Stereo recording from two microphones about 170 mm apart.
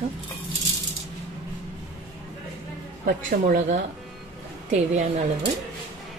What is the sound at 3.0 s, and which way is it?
Speech, 50° right (ahead or behind).